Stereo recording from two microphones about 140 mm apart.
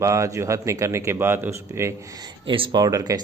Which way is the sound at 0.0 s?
25° right (ahead or behind).